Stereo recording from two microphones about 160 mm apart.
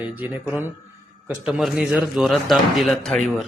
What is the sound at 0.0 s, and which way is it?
A man's voice, 10° right (ahead or behind).